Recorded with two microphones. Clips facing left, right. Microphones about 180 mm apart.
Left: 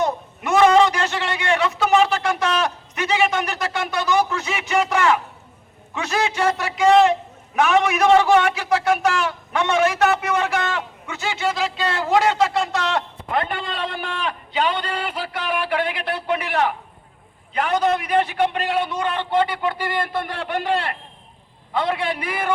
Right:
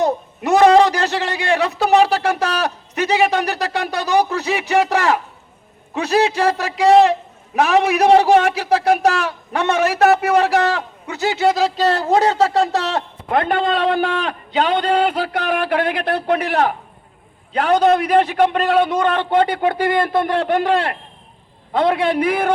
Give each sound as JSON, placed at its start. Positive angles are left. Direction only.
{"t": 0.0, "sound": "a man's voice", "side_deg": -35}
{"t": 13.3, "sound": "a man's voice", "side_deg": -50}
{"t": 18.1, "sound": "a man's voice", "side_deg": -40}